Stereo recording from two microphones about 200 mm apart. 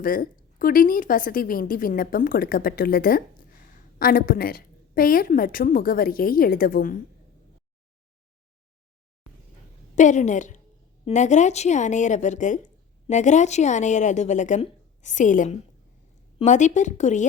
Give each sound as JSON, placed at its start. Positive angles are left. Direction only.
{"t": 0.0, "sound": "a woman's voice", "side_deg": 45}
{"t": 9.9, "sound": "a woman's voice", "side_deg": 40}